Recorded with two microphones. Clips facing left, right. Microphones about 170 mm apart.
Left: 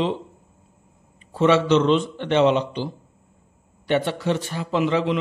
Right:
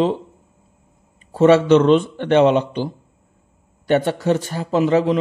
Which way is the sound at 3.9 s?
45° right (ahead or behind).